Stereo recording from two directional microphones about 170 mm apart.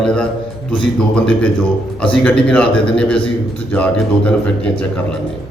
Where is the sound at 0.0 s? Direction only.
5° left (ahead or behind).